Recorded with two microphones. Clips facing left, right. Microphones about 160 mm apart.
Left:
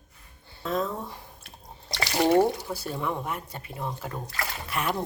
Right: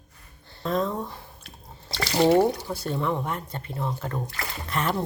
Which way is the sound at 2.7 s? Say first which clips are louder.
Right 3 dB; 10° left (ahead or behind).